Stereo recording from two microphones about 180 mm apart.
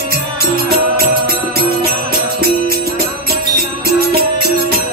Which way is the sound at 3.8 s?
55° right (ahead or behind).